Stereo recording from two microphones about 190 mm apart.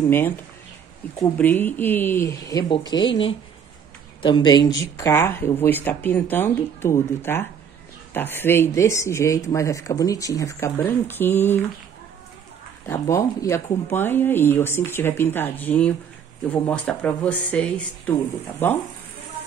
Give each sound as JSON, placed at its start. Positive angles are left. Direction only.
{"t": 1.4, "sound": "speech", "side_deg": 10}
{"t": 12.8, "sound": "speech", "side_deg": 15}